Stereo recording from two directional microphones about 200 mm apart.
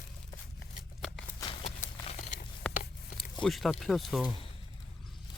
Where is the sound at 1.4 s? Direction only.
25° left (ahead or behind).